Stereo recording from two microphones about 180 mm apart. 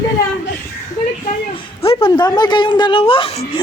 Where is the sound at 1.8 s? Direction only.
30° left (ahead or behind).